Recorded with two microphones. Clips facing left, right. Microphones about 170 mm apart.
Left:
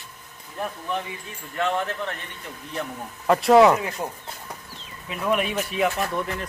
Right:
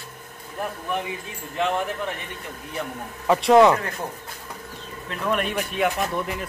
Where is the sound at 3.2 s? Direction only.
Centre (ahead or behind).